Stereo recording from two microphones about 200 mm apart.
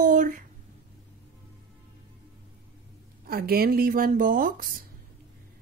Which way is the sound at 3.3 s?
50° right (ahead or behind).